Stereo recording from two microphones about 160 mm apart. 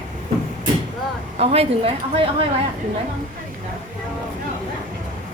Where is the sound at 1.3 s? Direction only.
40° right (ahead or behind).